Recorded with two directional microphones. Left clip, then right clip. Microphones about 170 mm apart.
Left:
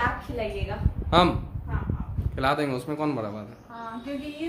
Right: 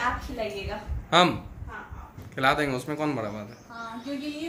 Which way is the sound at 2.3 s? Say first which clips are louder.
Right 1 dB; 5° left (ahead or behind).